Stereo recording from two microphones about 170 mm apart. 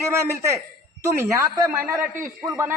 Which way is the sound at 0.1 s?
15° right (ahead or behind).